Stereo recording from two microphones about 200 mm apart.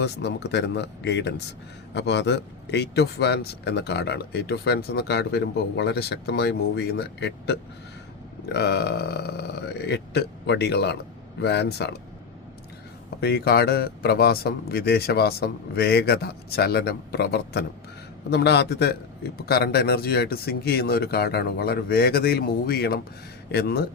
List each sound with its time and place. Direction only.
0.0 s speech: 60° left (ahead or behind)
13.1 s speech: 50° left (ahead or behind)